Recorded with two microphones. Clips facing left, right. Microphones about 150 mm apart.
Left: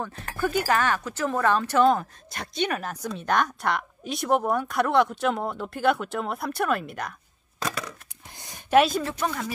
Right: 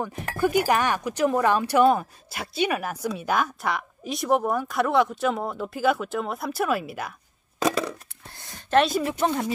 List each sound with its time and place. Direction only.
0.0 s speech: 15° right (ahead or behind)
8.4 s a sound: 15° left (ahead or behind)
9.2 s speech: 25° right (ahead or behind)